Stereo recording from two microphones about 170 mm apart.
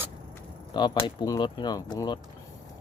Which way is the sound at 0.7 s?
25° left (ahead or behind).